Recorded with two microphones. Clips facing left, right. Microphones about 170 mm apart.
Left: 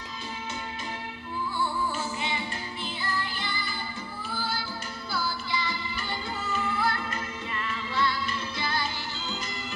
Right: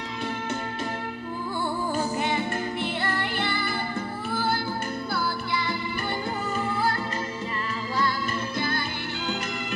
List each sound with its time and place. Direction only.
2.0 s music: 50° right (ahead or behind)
6.5 s music: 35° right (ahead or behind)
8.5 s music: 50° right (ahead or behind)